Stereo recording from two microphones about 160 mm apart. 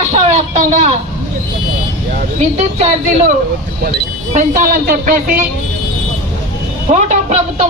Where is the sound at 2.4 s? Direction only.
45° right (ahead or behind).